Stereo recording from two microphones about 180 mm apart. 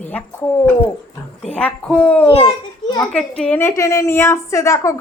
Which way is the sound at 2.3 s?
30° left (ahead or behind).